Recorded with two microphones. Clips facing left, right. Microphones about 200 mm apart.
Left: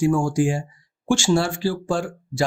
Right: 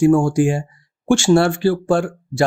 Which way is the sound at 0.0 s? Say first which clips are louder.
Right 6 dB; 55° right (ahead or behind).